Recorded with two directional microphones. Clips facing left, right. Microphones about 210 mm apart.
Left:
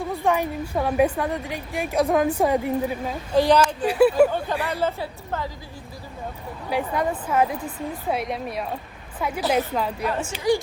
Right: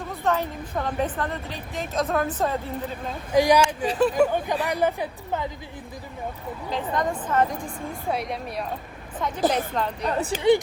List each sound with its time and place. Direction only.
0.0 s a woman's voice: 15° left (ahead or behind)
3.3 s a woman's voice: 10° right (ahead or behind)
3.8 s a woman's voice: 10° left (ahead or behind)
4.3 s a woman's voice: 15° right (ahead or behind)
6.7 s a woman's voice: 10° left (ahead or behind)
10.0 s speech: 35° right (ahead or behind)